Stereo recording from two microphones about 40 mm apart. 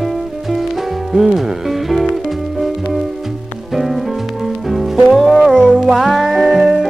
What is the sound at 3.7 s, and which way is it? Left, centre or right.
Music, centre.